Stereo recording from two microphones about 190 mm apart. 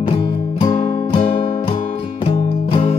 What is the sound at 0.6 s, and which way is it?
Music, 30° left (ahead or behind).